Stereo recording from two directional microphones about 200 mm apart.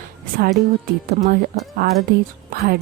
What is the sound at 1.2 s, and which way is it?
Speech, 45° right (ahead or behind).